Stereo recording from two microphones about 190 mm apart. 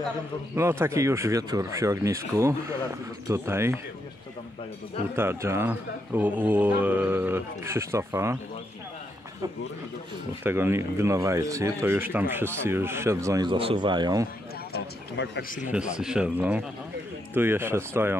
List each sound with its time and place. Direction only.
0.6 s speech: 15° right (ahead or behind)
5.1 s speech: 10° right (ahead or behind)
10.4 s speech: 10° right (ahead or behind)
14.7 s speech: 65° left (ahead or behind)
15.7 s speech: 5° right (ahead or behind)